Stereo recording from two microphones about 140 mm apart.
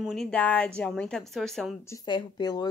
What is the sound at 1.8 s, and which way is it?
Speech, 20° left (ahead or behind).